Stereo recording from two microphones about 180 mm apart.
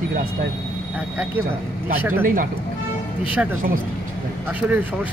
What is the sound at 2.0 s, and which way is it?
Speech, 10° right (ahead or behind).